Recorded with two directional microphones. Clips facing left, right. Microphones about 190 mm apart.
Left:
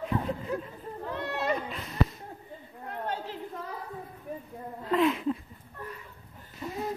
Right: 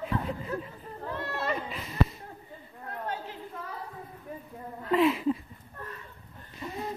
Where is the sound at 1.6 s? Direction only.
Centre (ahead or behind).